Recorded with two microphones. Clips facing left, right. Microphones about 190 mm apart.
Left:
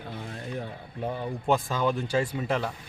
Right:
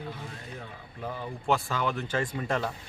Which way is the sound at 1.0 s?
25° left (ahead or behind).